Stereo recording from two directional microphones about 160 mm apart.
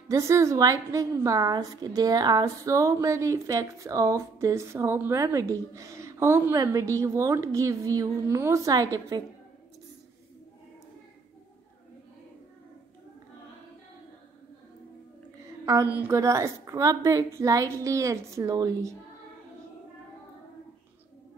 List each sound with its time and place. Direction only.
0.1 s a woman's voice: 20° right (ahead or behind)
15.6 s a woman's voice: 20° right (ahead or behind)